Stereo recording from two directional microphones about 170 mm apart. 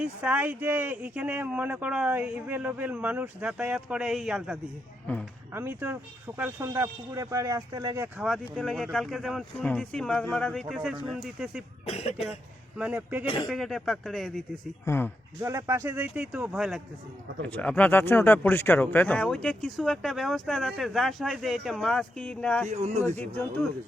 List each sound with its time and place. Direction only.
0.0 s speech: 10° right (ahead or behind)
5.5 s speech: 10° right (ahead or behind)
8.2 s speech: centre (ahead or behind)
11.9 s cough: 40° left (ahead or behind)
12.2 s a man's voice: centre (ahead or behind)
13.2 s cough: 30° left (ahead or behind)
13.5 s speech: centre (ahead or behind)
14.8 s speech: 15° left (ahead or behind)
15.4 s speech: 15° right (ahead or behind)
17.4 s speech: 10° left (ahead or behind)
22.7 s speech: 40° right (ahead or behind)
23.0 s speech: 10° left (ahead or behind)